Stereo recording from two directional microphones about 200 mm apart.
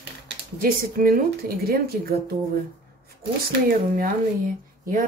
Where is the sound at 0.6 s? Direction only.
45° right (ahead or behind).